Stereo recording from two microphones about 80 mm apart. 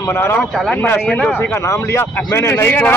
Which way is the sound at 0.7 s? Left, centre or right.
Left.